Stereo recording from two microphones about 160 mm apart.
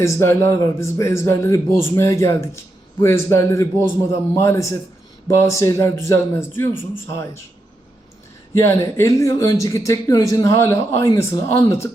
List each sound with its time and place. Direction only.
0.0 s speech: 15° left (ahead or behind)
8.5 s speech: 15° left (ahead or behind)